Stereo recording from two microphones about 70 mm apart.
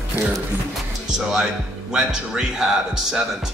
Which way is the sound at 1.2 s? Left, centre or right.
Centre.